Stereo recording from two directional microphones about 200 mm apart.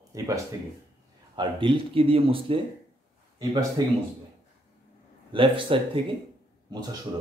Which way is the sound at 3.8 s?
20° right (ahead or behind).